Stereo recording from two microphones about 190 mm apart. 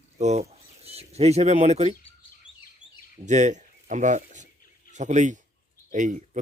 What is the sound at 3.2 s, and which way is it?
Speech, 40° right (ahead or behind).